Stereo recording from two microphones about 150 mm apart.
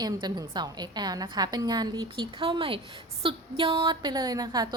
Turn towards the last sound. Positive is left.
turn(degrees=-25)  # may be behind; listen again after turning